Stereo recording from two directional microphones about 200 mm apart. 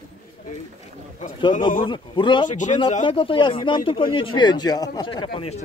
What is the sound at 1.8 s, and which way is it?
Speech, 25° left (ahead or behind).